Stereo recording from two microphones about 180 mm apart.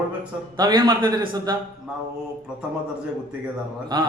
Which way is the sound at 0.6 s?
20° right (ahead or behind).